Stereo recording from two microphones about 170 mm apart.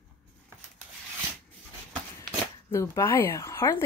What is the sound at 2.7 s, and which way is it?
Speech, 15° left (ahead or behind).